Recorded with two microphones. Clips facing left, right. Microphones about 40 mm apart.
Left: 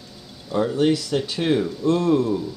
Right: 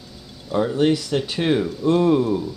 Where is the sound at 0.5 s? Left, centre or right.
Centre.